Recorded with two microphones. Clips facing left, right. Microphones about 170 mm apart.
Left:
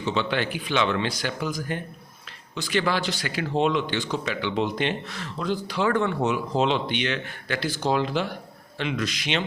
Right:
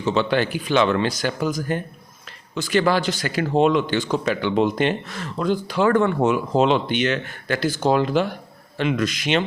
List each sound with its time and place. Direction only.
0.0 s a man's voice: 40° right (ahead or behind)